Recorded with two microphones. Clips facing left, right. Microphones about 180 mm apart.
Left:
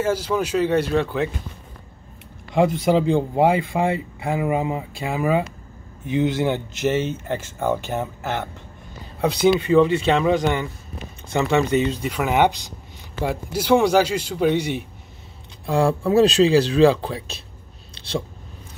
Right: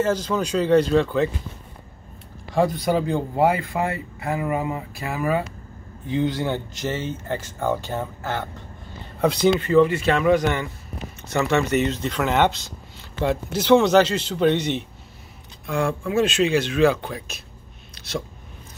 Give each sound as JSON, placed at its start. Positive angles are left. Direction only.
{"t": 0.0, "sound": "speech", "side_deg": 10}
{"t": 2.5, "sound": "speech", "side_deg": 25}
{"t": 9.2, "sound": "speech", "side_deg": 5}
{"t": 15.6, "sound": "speech", "side_deg": 35}
{"t": 17.9, "sound": "a sound", "side_deg": 30}